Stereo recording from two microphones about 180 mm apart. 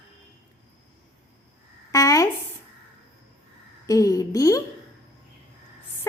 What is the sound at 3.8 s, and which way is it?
Speech, 20° left (ahead or behind).